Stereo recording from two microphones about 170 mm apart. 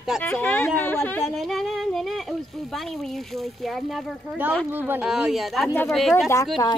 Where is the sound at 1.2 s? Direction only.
Centre (ahead or behind).